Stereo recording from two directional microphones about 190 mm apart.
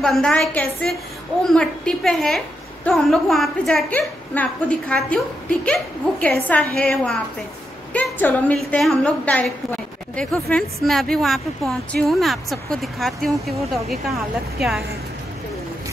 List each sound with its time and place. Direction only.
0.0 s a woman's voice: 5° left (ahead or behind)